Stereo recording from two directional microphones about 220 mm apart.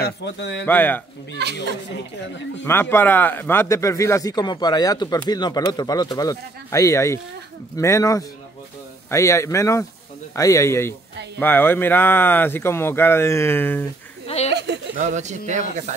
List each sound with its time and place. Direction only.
0.0 s a man's voice: 50° left (ahead or behind)
0.7 s speech: 10° left (ahead or behind)
1.4 s speech: 50° right (ahead or behind)
2.6 s speech: 10° left (ahead or behind)
14.2 s a sound: 30° left (ahead or behind)
14.5 s a sound: 50° right (ahead or behind)
15.0 s speech: 30° right (ahead or behind)